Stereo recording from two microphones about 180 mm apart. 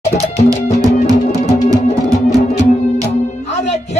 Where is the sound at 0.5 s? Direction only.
20° right (ahead or behind).